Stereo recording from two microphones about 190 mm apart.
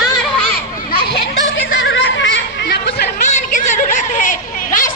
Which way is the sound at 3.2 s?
40° left (ahead or behind).